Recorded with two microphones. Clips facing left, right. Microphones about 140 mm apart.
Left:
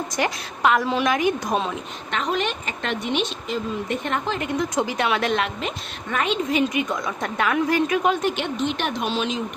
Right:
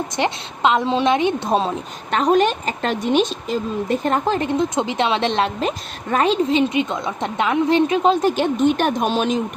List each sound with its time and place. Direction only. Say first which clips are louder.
0.2 s a woman's voice: right 3 dB; 25° right (ahead or behind)
8.5 s speech: right 7 dB; 45° right (ahead or behind)